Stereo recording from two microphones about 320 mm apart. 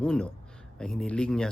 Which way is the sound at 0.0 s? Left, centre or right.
Centre.